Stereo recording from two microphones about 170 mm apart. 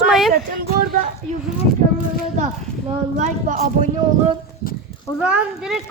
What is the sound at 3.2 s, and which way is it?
Speech, 45° right (ahead or behind).